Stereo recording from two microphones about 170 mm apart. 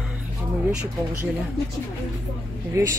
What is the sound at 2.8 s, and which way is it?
Speech, 15° right (ahead or behind).